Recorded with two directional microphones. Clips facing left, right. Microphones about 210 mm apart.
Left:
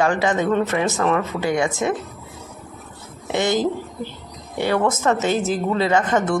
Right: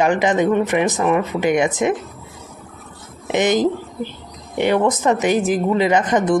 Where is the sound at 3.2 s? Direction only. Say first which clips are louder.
Right 3 dB; 20° right (ahead or behind).